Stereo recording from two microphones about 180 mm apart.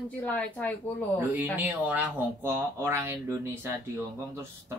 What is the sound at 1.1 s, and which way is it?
Speech, 10° right (ahead or behind).